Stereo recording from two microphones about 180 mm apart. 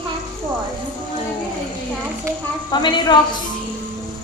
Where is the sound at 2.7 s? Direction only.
25° left (ahead or behind).